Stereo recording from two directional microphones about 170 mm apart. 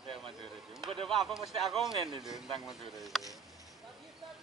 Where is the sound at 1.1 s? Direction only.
Centre (ahead or behind).